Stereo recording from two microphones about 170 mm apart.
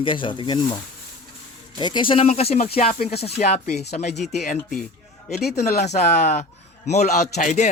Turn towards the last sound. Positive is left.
turn(degrees=45)  # may be behind; listen again after turning